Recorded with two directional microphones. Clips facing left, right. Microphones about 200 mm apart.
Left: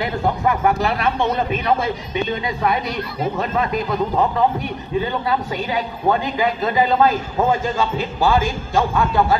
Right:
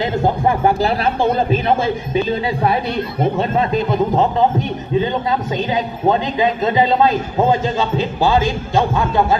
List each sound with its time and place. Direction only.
0.0 s a man's voice: 30° right (ahead or behind)